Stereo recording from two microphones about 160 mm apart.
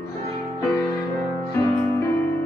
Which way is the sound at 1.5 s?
15° left (ahead or behind).